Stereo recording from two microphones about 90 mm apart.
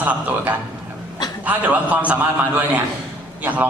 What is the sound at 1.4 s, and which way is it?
Speech, 15° right (ahead or behind).